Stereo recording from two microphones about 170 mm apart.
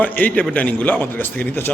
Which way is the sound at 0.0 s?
10° left (ahead or behind).